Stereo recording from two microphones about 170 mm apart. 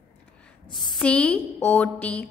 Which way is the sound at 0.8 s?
5° left (ahead or behind).